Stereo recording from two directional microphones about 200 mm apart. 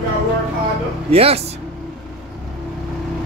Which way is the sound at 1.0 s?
30° right (ahead or behind).